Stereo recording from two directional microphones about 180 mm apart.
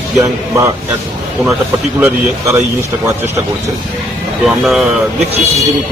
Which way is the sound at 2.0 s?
10° right (ahead or behind).